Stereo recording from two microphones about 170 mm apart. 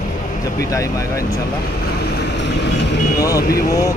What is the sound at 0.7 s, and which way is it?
Speech, 20° left (ahead or behind).